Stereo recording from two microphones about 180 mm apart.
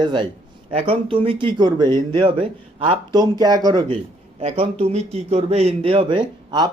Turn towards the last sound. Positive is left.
turn(degrees=-25)  # may be behind; listen again after turning